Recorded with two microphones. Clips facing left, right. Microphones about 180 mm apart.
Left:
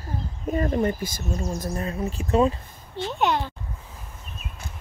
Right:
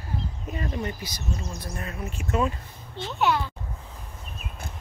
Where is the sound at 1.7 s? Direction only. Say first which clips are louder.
Left 6 dB; 30° left (ahead or behind).